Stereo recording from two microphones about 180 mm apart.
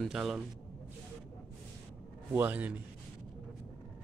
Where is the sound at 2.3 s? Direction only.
10° right (ahead or behind).